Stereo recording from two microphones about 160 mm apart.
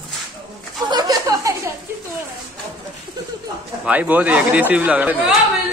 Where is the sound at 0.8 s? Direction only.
25° right (ahead or behind).